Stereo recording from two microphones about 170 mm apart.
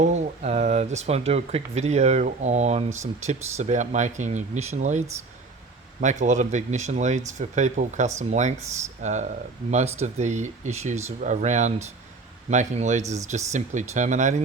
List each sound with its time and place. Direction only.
0.0 s speech: 40° right (ahead or behind)